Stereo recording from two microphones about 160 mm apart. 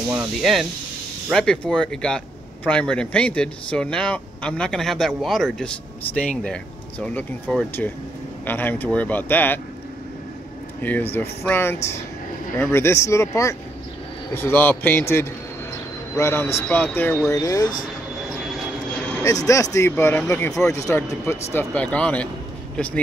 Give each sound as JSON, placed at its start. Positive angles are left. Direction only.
{"t": 0.1, "sound": "speech", "side_deg": -5}
{"t": 10.8, "sound": "speech", "side_deg": 10}
{"t": 19.2, "sound": "speech", "side_deg": 20}